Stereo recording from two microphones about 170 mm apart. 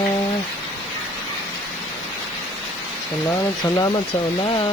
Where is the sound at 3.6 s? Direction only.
25° left (ahead or behind).